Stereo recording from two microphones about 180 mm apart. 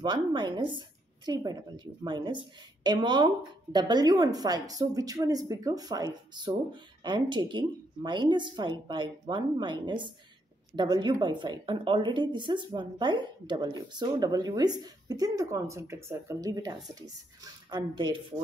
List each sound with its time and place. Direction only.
0.0 s a woman's voice: 25° right (ahead or behind)